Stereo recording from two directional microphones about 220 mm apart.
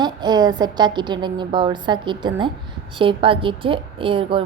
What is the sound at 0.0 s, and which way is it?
A woman's voice, 20° right (ahead or behind).